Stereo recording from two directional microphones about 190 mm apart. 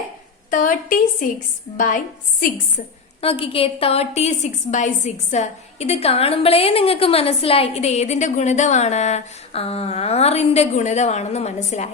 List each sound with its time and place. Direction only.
0.5 s a woman's voice: 45° left (ahead or behind)
3.2 s a woman's voice: 30° left (ahead or behind)